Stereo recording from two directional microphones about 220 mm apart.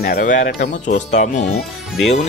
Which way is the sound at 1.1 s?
35° left (ahead or behind).